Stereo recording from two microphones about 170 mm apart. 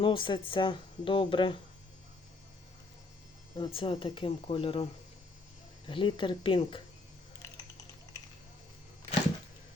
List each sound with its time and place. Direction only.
0.0 s speech: 30° left (ahead or behind)
3.6 s speech: 30° left (ahead or behind)
5.9 s speech: 30° left (ahead or behind)